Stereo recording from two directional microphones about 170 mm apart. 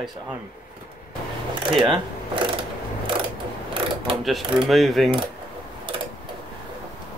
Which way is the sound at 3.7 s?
30° right (ahead or behind).